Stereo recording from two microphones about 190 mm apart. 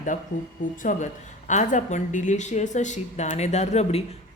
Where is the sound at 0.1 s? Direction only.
40° left (ahead or behind).